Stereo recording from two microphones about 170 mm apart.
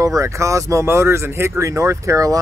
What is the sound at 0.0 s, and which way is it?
Speech, 20° right (ahead or behind).